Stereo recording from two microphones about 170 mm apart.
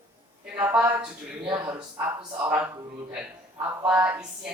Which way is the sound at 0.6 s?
10° right (ahead or behind).